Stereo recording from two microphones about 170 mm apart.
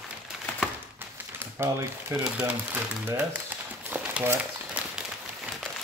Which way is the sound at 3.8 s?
10° right (ahead or behind).